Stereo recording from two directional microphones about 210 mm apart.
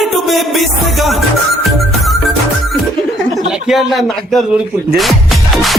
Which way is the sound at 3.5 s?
5° right (ahead or behind).